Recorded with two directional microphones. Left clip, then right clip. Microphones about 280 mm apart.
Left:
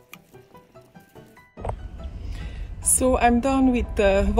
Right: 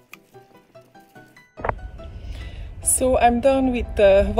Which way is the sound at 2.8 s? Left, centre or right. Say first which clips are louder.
Right 2 dB; centre.